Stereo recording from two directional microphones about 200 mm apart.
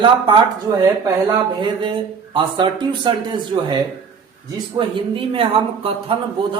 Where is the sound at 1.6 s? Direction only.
25° right (ahead or behind).